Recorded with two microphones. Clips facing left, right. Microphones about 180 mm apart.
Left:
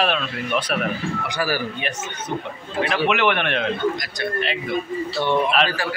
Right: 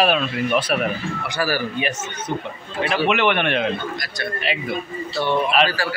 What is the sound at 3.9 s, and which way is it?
Speech, 20° left (ahead or behind).